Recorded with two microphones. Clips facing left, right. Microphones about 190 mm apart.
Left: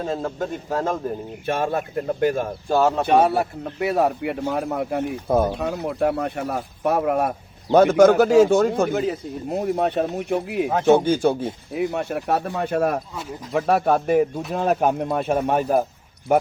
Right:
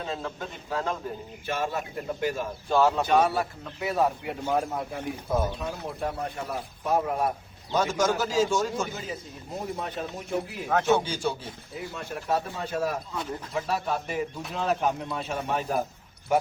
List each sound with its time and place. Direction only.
0.0 s speech: 45° left (ahead or behind)
1.5 s speech: 55° left (ahead or behind)
10.8 s speech: 55° left (ahead or behind)
11.7 s a man's voice: 70° left (ahead or behind)